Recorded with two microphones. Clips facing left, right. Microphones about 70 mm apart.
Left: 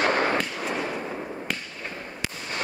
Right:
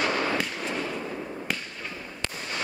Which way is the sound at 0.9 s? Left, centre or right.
Left.